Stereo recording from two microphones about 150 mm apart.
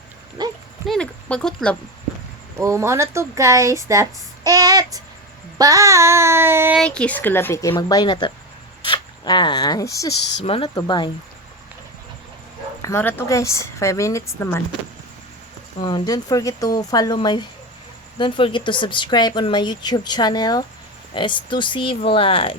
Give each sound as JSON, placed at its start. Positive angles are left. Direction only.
{"t": 0.4, "sound": "a sound", "side_deg": -30}
{"t": 0.9, "sound": "speech", "side_deg": 5}
{"t": 2.6, "sound": "speech", "side_deg": -20}
{"t": 4.4, "sound": "child singing", "side_deg": -25}
{"t": 6.7, "sound": "a woman's voice", "side_deg": 5}
{"t": 8.9, "sound": "zipper", "side_deg": 30}
{"t": 10.4, "sound": "speech", "side_deg": 40}
{"t": 12.8, "sound": "a woman's voice", "side_deg": 15}
{"t": 15.8, "sound": "a woman's voice", "side_deg": 30}